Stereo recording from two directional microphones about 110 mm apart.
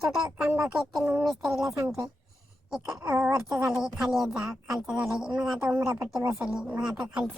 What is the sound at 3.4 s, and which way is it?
A woman's voice, 5° right (ahead or behind).